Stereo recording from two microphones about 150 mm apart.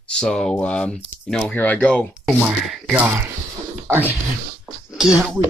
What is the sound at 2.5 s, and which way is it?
Speech, 5° right (ahead or behind).